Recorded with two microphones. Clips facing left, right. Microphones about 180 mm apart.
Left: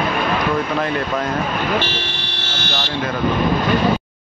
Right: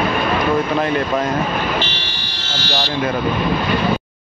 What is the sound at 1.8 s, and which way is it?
Vehicle, 60° left (ahead or behind).